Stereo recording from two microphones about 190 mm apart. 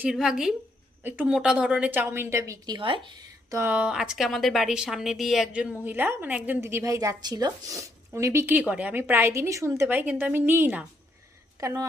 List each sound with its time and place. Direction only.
0.0 s a woman's voice: 5° right (ahead or behind); by 3.1 s 25° right (ahead or behind)
3.5 s a woman's voice: 10° right (ahead or behind)